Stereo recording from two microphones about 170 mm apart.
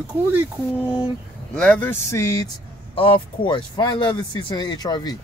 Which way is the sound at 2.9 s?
30° left (ahead or behind).